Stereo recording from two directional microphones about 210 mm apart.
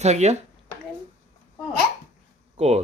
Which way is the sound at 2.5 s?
30° right (ahead or behind).